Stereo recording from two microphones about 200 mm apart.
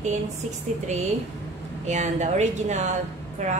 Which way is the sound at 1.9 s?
35° right (ahead or behind).